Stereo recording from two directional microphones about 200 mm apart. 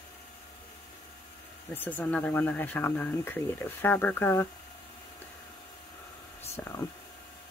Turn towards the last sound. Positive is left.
turn(degrees=10)  # may be behind; listen again after turning